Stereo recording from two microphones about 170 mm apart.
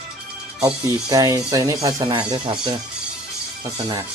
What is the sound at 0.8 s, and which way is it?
Speech, 20° right (ahead or behind).